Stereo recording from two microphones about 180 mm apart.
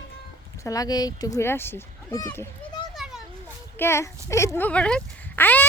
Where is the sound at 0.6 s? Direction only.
20° left (ahead or behind).